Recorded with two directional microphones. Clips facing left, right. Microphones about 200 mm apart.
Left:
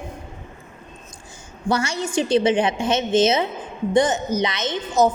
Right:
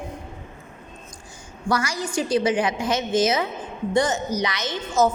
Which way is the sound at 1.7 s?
25° left (ahead or behind).